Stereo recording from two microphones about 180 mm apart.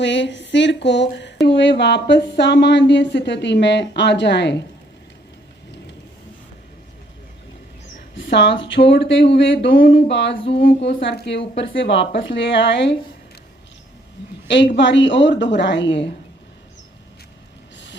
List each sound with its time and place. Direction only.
0.0 s speech: 80° left
7.9 s a sound: 80° left
8.9 s a woman's voice: 85° left
10.8 s speech: 65° left (ahead or behind)
14.4 s a woman's voice: 80° left